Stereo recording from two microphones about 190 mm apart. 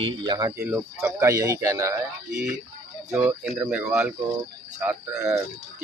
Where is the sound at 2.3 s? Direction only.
5° right (ahead or behind).